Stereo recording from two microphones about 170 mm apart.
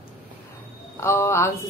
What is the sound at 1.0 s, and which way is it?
Speech, 15° left (ahead or behind).